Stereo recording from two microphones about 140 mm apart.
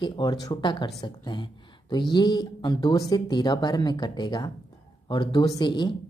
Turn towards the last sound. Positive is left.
turn(degrees=35)  # may be behind; listen again after turning